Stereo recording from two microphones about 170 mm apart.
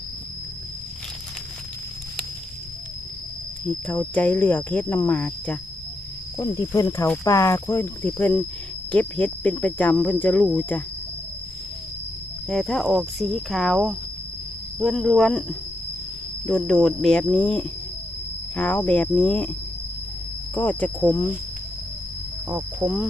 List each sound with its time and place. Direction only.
3.6 s speech: 10° left (ahead or behind)
6.3 s speech: 15° left (ahead or behind)
12.4 s speech: centre (ahead or behind)
16.4 s speech: 5° left (ahead or behind)
20.6 s speech: 10° left (ahead or behind)
22.8 s speech: 25° right (ahead or behind)